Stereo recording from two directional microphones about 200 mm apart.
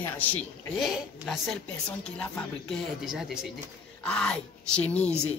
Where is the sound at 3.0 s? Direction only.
Centre (ahead or behind).